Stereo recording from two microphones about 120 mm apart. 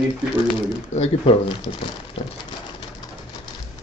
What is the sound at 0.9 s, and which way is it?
Speech, 55° left (ahead or behind).